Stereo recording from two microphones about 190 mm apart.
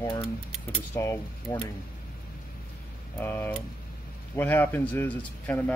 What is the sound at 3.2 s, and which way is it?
A man's voice, 10° left (ahead or behind).